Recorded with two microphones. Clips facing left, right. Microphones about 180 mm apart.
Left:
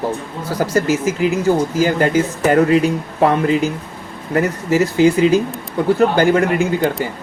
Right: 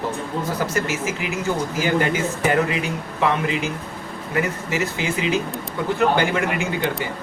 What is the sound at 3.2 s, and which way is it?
Speech, 40° left (ahead or behind).